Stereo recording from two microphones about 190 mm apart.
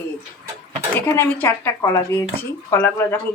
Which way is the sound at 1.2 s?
10° left (ahead or behind).